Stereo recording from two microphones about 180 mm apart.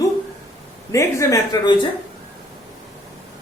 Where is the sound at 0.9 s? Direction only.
15° left (ahead or behind).